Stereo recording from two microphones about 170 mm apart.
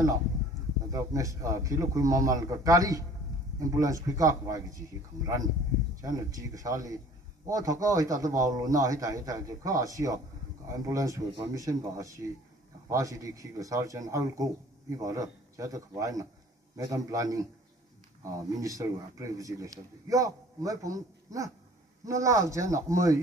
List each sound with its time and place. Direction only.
0.9 s speech: 20° right (ahead or behind)